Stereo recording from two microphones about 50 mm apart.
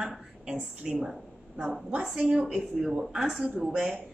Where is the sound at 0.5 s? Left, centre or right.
Centre.